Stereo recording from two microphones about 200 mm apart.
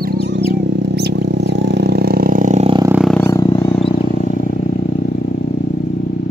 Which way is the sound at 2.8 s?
5° right (ahead or behind).